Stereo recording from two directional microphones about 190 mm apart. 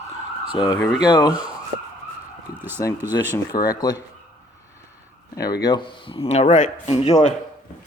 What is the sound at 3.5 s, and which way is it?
Speech, 20° left (ahead or behind).